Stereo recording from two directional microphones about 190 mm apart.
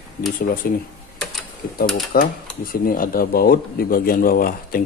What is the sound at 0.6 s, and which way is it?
Speech, 55° left (ahead or behind).